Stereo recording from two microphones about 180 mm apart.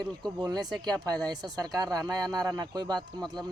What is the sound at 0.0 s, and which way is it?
Speech, 25° right (ahead or behind).